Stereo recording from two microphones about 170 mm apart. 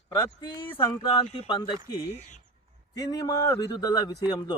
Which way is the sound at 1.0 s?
30° left (ahead or behind).